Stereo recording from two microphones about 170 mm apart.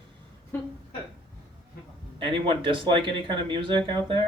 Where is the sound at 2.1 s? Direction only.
30° right (ahead or behind).